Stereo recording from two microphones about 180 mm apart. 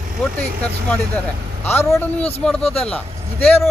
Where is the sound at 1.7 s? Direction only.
10° left (ahead or behind).